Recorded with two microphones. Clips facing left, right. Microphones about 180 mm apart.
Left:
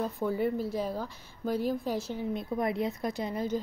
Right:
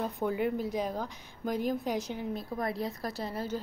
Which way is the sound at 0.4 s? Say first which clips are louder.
Left 1 dB; 15° right (ahead or behind).